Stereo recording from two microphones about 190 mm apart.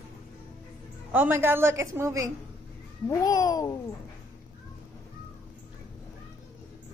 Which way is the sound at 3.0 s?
20° left (ahead or behind).